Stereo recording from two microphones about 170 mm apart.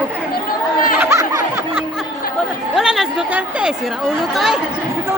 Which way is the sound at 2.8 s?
Centre (ahead or behind).